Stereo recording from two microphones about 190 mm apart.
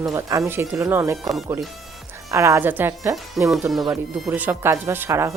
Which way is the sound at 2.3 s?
15° right (ahead or behind).